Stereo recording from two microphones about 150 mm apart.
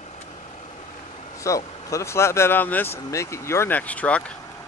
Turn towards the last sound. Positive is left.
turn(degrees=10)  # may be behind; listen again after turning